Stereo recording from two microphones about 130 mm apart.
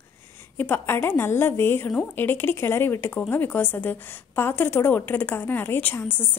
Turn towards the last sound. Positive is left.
turn(degrees=15)  # may be behind; listen again after turning